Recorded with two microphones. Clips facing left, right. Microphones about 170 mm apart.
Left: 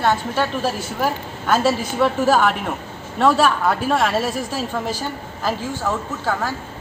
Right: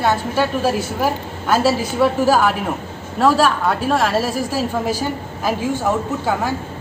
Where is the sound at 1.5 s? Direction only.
10° right (ahead or behind).